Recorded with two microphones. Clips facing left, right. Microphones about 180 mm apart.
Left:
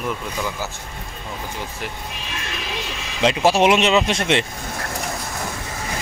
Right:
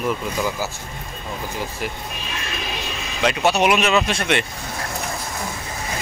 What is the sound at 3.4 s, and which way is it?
Speech, 25° left (ahead or behind).